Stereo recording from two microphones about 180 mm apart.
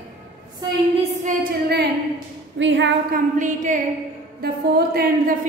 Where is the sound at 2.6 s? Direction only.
90° right.